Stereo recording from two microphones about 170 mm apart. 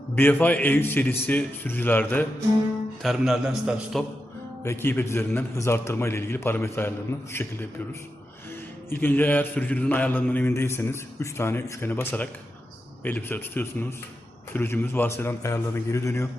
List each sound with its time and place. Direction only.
0.2 s a man's voice: 10° left (ahead or behind)
3.0 s a man's voice: centre (ahead or behind)
4.6 s a man's voice: 15° left (ahead or behind)
8.9 s a man's voice: 10° left (ahead or behind)